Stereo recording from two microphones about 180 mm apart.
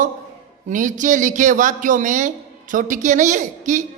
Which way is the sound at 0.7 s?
45° right (ahead or behind).